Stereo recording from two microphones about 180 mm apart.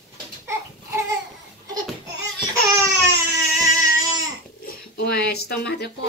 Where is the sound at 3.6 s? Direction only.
20° right (ahead or behind).